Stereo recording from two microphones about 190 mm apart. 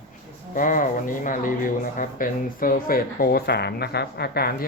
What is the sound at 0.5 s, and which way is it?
Speech, 45° left (ahead or behind).